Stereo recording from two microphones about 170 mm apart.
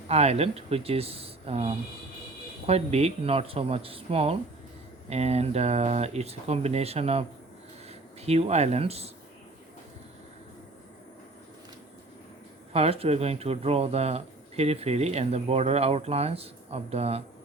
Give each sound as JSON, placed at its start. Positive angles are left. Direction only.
{"t": 0.1, "sound": "speech", "side_deg": -40}
{"t": 12.7, "sound": "speech", "side_deg": -35}